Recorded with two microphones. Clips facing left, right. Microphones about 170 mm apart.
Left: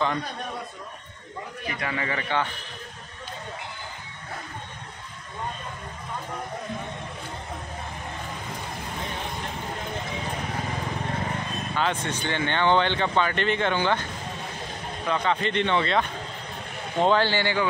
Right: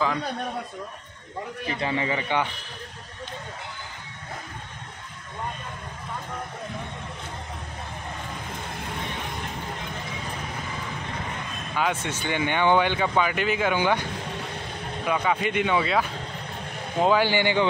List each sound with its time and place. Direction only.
1.7 s speech: 25° right (ahead or behind)
11.7 s speech: 10° right (ahead or behind)
15.0 s speech: 10° right (ahead or behind)